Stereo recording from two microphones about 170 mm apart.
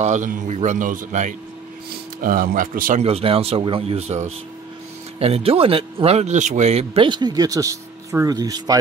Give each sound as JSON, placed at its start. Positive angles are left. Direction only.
{"t": 0.0, "sound": "speech", "side_deg": -50}
{"t": 3.0, "sound": "speech", "side_deg": -35}